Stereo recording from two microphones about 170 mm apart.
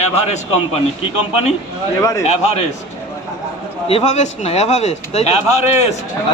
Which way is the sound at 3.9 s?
40° left (ahead or behind).